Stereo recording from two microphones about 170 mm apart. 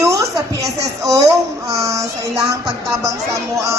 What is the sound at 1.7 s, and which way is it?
Speech, 20° right (ahead or behind).